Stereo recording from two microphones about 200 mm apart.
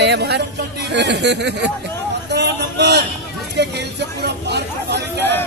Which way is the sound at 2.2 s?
55° right (ahead or behind).